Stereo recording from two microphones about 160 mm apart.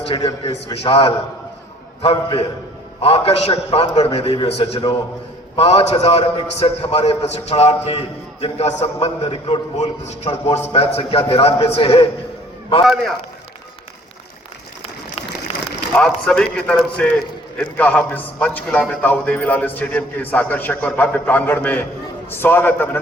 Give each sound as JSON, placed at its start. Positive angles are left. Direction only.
{"t": 0.2, "sound": "a man's voice", "side_deg": 25}
{"t": 0.5, "sound": "a man's voice", "side_deg": 40}
{"t": 12.8, "sound": "a man's voice", "side_deg": 0}
{"t": 16.0, "sound": "a man's voice", "side_deg": 5}